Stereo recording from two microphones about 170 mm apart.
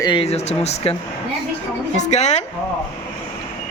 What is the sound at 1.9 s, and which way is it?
Speech, 45° left (ahead or behind).